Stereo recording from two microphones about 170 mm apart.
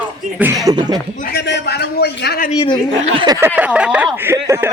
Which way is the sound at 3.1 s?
30° right (ahead or behind).